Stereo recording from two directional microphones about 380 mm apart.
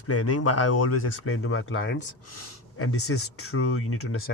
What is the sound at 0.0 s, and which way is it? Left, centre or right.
Speech, left.